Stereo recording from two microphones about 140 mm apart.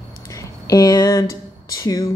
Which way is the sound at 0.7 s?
25° left (ahead or behind).